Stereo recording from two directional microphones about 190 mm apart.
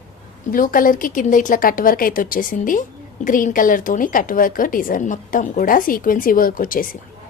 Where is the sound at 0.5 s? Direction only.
45° left (ahead or behind).